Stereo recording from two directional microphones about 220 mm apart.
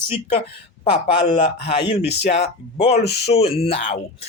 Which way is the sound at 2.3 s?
25° left (ahead or behind).